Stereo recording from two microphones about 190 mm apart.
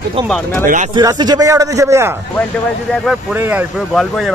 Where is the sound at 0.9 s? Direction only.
20° right (ahead or behind).